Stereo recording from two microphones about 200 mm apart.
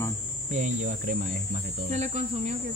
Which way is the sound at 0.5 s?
40° right (ahead or behind).